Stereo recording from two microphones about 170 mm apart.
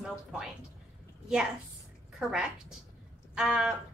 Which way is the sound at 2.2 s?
5° right (ahead or behind).